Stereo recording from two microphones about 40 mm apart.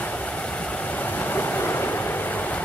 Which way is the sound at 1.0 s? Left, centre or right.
Left.